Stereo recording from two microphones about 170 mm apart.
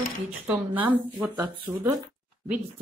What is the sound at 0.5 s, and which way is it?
Speech, 5° right (ahead or behind).